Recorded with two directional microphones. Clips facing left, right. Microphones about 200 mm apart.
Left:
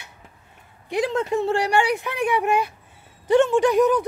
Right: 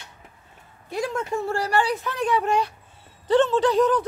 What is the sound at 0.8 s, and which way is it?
Speech, 20° left (ahead or behind).